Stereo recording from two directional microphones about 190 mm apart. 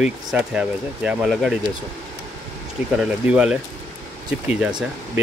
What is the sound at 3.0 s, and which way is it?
Speech, 5° right (ahead or behind).